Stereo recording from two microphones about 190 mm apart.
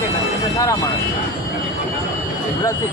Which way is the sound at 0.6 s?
15° left (ahead or behind).